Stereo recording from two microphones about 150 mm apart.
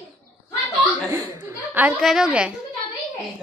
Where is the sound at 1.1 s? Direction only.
20° right (ahead or behind).